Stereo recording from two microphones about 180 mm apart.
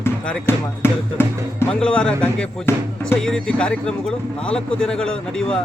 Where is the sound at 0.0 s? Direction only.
10° left (ahead or behind).